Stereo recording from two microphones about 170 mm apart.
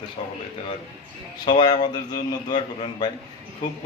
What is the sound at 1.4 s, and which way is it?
Speech, 25° left (ahead or behind).